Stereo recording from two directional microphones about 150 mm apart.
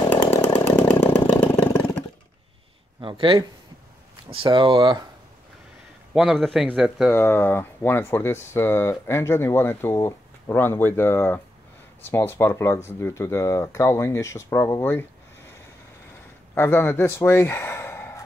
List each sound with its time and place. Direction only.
0.7 s chainsaw: 15° left (ahead or behind)
3.0 s speech: 35° right (ahead or behind)
6.1 s speech: centre (ahead or behind)
7.1 s speech: 15° left (ahead or behind)
16.5 s speech: 15° left (ahead or behind)